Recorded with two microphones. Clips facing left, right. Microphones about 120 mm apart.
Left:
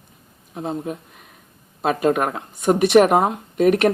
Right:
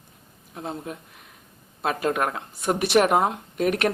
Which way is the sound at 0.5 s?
20° left (ahead or behind).